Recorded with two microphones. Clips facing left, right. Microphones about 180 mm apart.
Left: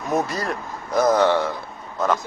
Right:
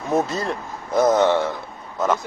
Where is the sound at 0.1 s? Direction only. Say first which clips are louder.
Right 2 dB; 25° right (ahead or behind).